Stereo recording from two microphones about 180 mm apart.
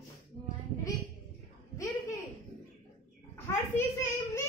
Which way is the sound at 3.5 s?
15° left (ahead or behind).